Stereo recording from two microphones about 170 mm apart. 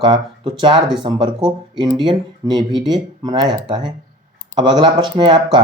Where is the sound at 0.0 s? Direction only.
30° right (ahead or behind).